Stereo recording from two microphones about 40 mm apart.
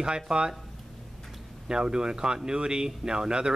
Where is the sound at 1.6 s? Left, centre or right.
Centre.